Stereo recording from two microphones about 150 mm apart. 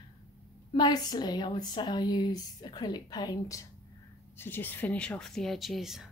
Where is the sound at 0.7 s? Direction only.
30° left (ahead or behind).